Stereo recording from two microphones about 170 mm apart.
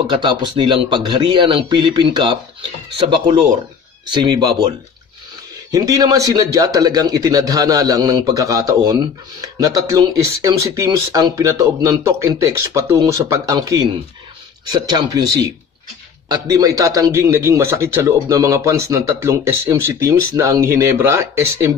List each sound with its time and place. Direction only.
0.0 s a man's voice: 25° right (ahead or behind)